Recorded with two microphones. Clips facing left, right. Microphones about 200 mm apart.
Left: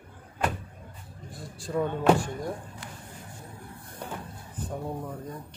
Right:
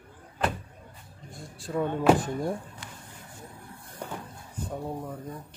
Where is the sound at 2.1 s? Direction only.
20° right (ahead or behind).